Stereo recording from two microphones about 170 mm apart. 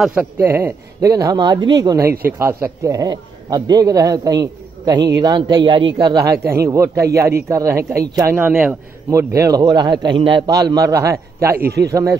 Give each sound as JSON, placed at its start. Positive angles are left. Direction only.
{"t": 0.0, "sound": "speech", "side_deg": -5}
{"t": 11.5, "sound": "a man's voice", "side_deg": -65}
{"t": 11.9, "sound": "speech", "side_deg": -20}